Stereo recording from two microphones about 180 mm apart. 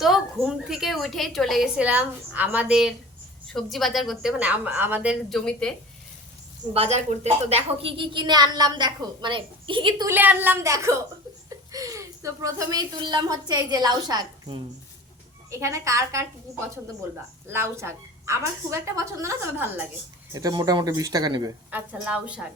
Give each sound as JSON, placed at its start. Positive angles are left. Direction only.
{"t": 0.0, "sound": "a woman's voice", "side_deg": 0}
{"t": 5.3, "sound": "a woman's voice", "side_deg": 5}
{"t": 6.7, "sound": "a woman's voice", "side_deg": -35}
{"t": 10.1, "sound": "a woman's voice", "side_deg": -10}
{"t": 17.5, "sound": "a woman's voice", "side_deg": -15}
{"t": 20.3, "sound": "a woman's voice", "side_deg": -20}
{"t": 21.7, "sound": "a woman's voice", "side_deg": -10}